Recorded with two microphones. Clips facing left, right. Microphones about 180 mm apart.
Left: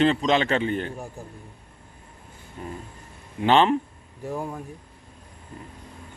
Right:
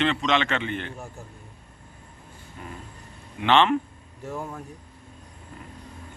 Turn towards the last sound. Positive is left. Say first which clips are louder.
# left 3 dB
turn(degrees=15)  # may be behind; listen again after turning